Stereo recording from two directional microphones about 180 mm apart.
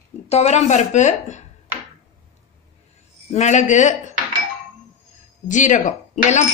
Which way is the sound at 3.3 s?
40° left (ahead or behind).